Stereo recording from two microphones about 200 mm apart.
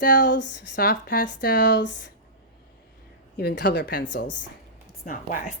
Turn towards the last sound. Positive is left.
turn(degrees=45)  # may be behind; listen again after turning